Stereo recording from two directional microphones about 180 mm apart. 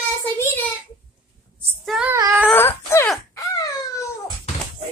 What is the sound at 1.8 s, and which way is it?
Child singing, centre (ahead or behind).